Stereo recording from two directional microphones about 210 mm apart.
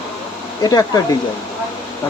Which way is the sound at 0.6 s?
15° left (ahead or behind).